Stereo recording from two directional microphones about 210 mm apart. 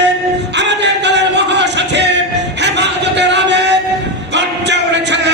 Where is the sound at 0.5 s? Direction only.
55° right (ahead or behind).